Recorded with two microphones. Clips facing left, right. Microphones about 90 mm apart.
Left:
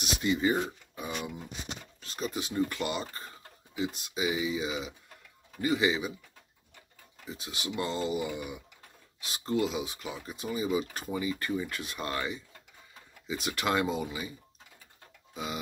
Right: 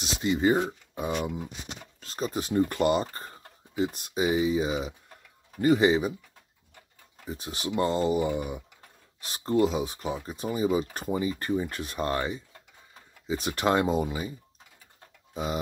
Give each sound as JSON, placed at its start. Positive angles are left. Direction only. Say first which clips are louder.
{"t": 0.0, "sound": "speech", "louder": "right 3 dB", "side_deg": -30}
{"t": 7.2, "sound": "speech", "louder": "right 5 dB", "side_deg": -40}